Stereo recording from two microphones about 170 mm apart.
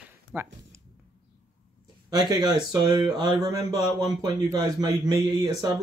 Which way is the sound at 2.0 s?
25° right (ahead or behind).